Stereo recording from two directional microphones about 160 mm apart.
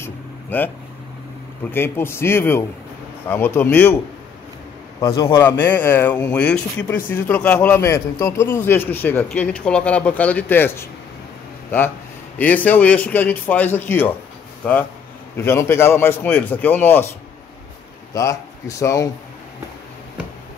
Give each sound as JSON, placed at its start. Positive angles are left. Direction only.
{"t": 0.0, "sound": "a sound", "side_deg": 10}
{"t": 1.7, "sound": "a man's voice", "side_deg": 15}
{"t": 5.0, "sound": "a man's voice", "side_deg": 20}
{"t": 12.4, "sound": "a man's voice", "side_deg": 10}
{"t": 18.1, "sound": "speech", "side_deg": 20}